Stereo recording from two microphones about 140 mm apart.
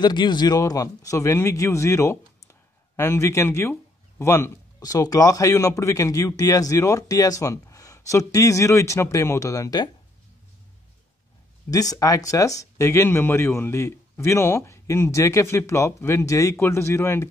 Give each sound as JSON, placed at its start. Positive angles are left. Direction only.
{"t": 0.0, "sound": "speech", "side_deg": 30}
{"t": 11.7, "sound": "speech", "side_deg": 25}